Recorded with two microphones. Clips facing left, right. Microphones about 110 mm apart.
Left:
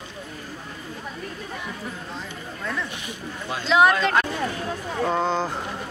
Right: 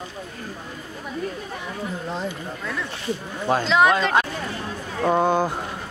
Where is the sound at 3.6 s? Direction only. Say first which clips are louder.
Left 2 dB; 5° left (ahead or behind); by 5.5 s 15° right (ahead or behind).